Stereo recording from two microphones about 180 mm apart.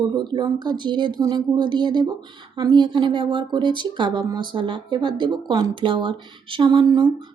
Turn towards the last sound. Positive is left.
turn(degrees=-25)  # may be behind; listen again after turning